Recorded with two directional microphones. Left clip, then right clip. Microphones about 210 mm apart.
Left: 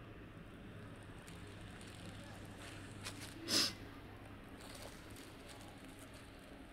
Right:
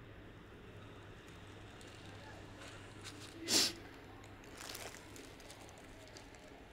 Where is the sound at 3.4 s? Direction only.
25° right (ahead or behind).